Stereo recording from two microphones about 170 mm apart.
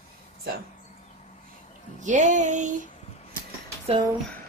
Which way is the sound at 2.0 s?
45° right (ahead or behind).